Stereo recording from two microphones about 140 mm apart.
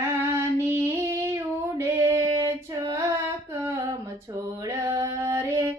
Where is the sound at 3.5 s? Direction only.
20° right (ahead or behind).